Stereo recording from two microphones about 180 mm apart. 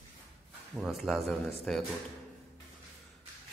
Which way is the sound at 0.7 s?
Centre (ahead or behind).